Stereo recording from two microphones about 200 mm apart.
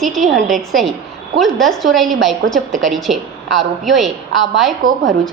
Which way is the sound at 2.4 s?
70° right (ahead or behind).